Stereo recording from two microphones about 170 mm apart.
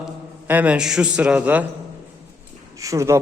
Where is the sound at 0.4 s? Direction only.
10° right (ahead or behind).